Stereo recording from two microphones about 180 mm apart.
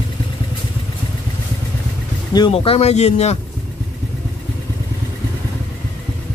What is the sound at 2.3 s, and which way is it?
Speech, 25° left (ahead or behind).